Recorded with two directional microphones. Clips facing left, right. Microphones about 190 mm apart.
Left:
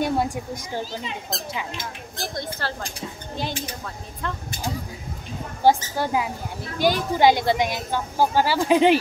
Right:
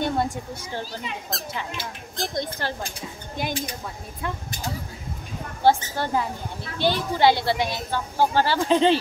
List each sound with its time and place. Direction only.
0.0 s a woman's voice: 10° left (ahead or behind)
2.1 s speech: 20° right (ahead or behind)
5.6 s a woman's voice: 10° left (ahead or behind)